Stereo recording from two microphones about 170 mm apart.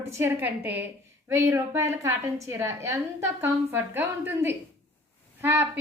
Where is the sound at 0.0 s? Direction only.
15° right (ahead or behind).